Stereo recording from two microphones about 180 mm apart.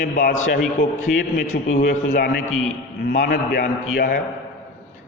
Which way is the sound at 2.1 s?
55° left (ahead or behind).